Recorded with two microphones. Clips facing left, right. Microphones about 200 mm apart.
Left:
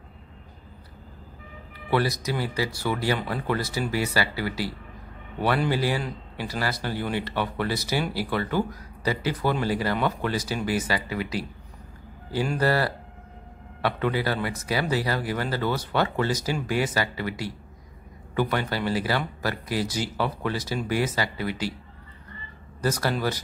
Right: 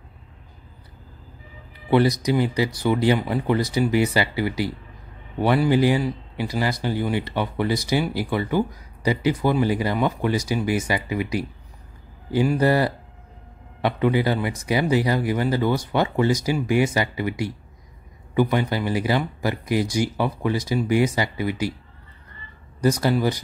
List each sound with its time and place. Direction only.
1.9 s speech: 20° right (ahead or behind)
22.8 s speech: 15° right (ahead or behind)